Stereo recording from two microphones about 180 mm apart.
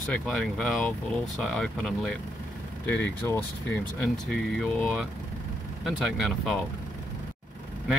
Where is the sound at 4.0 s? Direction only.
Centre (ahead or behind).